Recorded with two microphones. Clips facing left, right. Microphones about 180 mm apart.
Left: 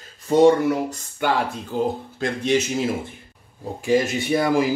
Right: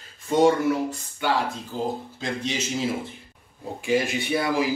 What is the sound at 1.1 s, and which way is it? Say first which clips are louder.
Speech: left 3 dB; 55° left (ahead or behind).